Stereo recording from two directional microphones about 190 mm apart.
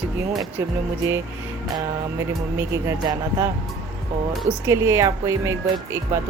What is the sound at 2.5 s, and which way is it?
Speech, 15° right (ahead or behind).